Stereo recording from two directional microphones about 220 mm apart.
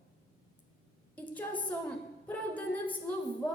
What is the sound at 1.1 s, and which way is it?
A woman's voice, 5° left (ahead or behind).